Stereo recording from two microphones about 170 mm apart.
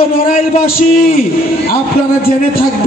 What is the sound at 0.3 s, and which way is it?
Speech, 60° left (ahead or behind).